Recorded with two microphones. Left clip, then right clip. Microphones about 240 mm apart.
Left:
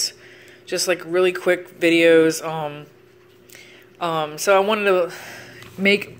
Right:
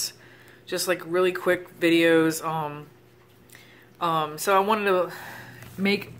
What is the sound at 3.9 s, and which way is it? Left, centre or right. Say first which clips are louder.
Speech: left 2 dB; centre.